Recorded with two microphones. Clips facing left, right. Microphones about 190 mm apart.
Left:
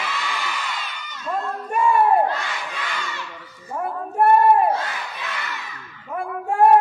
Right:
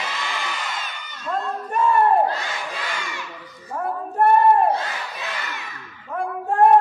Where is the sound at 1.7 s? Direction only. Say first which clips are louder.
Even; 10° left (ahead or behind).